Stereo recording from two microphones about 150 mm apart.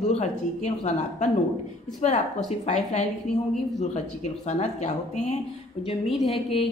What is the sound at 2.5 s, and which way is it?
Speech, 50° left (ahead or behind).